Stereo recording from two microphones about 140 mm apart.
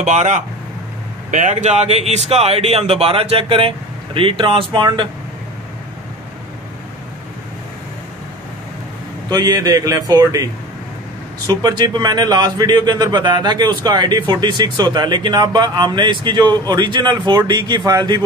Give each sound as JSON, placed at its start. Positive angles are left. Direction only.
{"t": 0.0, "sound": "speech", "side_deg": -55}
{"t": 9.3, "sound": "a man's voice", "side_deg": -30}